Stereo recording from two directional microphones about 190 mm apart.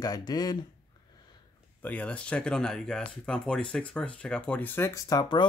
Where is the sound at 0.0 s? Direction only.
20° left (ahead or behind).